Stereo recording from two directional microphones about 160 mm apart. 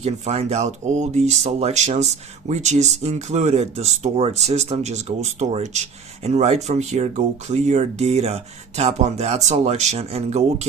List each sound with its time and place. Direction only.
0.0 s speech: 45° right (ahead or behind)